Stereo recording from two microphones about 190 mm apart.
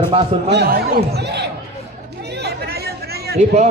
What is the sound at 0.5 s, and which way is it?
Speech, 60° right (ahead or behind).